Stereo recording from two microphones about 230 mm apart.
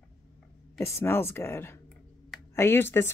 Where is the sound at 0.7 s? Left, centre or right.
Centre.